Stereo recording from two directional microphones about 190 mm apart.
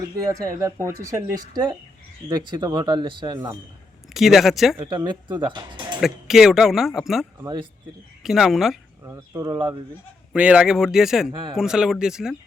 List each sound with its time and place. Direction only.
0.3 s speech: 15° right (ahead or behind)
4.1 s speech: centre (ahead or behind)
4.8 s speech: 25° right (ahead or behind)
6.0 s speech: centre (ahead or behind)
7.4 s speech: 20° right (ahead or behind)
8.2 s speech: centre (ahead or behind)
9.0 s speech: 15° right (ahead or behind)
10.3 s speech: 5° right (ahead or behind)